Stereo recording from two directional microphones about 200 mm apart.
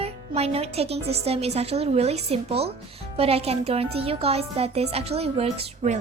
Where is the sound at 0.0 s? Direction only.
30° right (ahead or behind).